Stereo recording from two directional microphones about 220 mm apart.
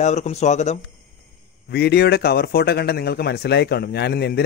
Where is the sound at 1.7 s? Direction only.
45° left (ahead or behind).